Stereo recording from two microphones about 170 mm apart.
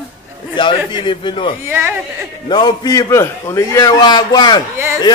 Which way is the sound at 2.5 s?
25° left (ahead or behind).